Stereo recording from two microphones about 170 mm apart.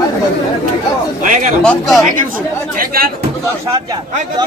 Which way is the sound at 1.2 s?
50° right (ahead or behind).